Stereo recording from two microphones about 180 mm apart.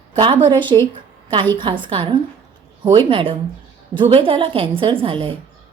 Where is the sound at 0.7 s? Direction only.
25° right (ahead or behind).